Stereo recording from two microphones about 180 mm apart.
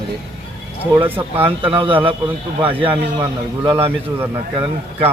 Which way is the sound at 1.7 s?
30° right (ahead or behind).